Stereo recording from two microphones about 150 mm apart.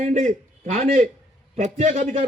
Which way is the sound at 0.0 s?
60° right (ahead or behind).